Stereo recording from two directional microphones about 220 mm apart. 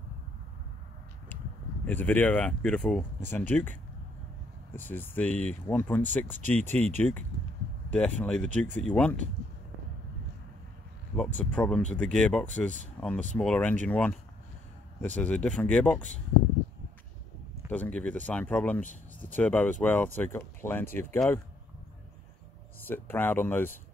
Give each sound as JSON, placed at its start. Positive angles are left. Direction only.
{"t": 1.9, "sound": "speech", "side_deg": 10}
{"t": 4.7, "sound": "speech", "side_deg": 10}
{"t": 8.5, "sound": "speech", "side_deg": -35}
{"t": 8.8, "sound": "speech", "side_deg": 5}
{"t": 11.1, "sound": "speech", "side_deg": 5}
{"t": 17.6, "sound": "speech", "side_deg": 5}
{"t": 22.8, "sound": "speech", "side_deg": 10}